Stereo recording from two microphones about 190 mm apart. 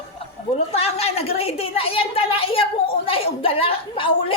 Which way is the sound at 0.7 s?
30° left (ahead or behind).